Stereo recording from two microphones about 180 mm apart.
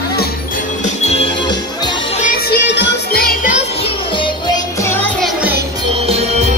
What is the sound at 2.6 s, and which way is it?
Music, 75° left (ahead or behind).